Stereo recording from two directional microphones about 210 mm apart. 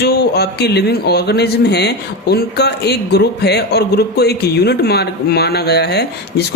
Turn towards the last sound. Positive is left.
turn(degrees=50)  # may be behind; listen again after turning